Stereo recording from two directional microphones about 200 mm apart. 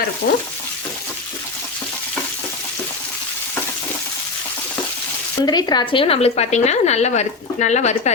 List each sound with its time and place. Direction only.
0.2 s stir: 50° left (ahead or behind)
5.5 s speech: 20° left (ahead or behind); by 8.1 s 35° left (ahead or behind)